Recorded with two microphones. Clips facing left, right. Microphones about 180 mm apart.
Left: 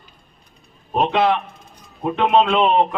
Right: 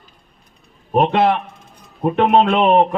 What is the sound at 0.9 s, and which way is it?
A man's voice, 55° right (ahead or behind).